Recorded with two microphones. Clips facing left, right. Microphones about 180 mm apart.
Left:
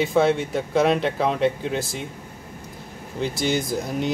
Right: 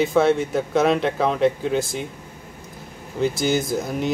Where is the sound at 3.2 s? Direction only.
Centre (ahead or behind).